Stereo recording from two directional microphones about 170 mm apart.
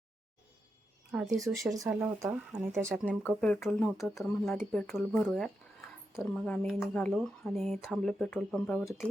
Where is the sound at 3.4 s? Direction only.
5° left (ahead or behind).